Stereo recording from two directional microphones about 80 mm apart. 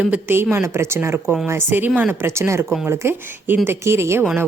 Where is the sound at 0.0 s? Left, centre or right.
Centre.